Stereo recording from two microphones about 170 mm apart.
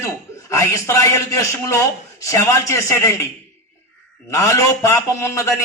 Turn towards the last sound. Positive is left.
turn(degrees=20)  # may be behind; listen again after turning